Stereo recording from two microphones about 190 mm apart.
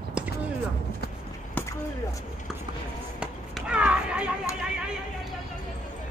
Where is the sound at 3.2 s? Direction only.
5° right (ahead or behind).